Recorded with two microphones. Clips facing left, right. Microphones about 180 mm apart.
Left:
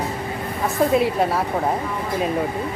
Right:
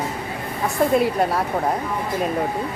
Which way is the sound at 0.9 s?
Centre (ahead or behind).